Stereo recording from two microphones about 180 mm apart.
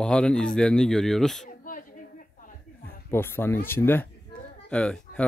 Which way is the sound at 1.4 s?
50° left (ahead or behind).